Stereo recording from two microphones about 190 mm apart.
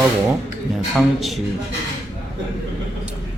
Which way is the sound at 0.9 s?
Centre (ahead or behind).